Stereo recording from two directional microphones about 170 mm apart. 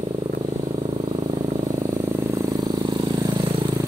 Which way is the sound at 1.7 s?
20° right (ahead or behind).